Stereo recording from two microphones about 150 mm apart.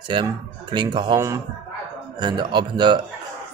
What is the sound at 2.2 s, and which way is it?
Speech, 30° right (ahead or behind).